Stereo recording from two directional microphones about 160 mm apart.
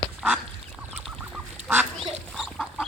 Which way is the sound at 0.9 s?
5° right (ahead or behind).